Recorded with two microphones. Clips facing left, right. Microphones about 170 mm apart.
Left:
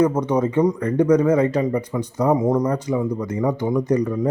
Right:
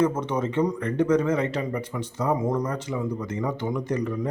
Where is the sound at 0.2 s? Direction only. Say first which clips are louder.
Left 6 dB; 35° left (ahead or behind).